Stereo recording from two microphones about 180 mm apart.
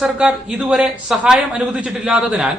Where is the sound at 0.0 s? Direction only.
5° right (ahead or behind).